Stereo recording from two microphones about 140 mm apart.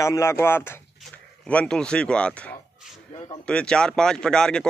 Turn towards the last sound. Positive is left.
turn(degrees=5)  # may be behind; listen again after turning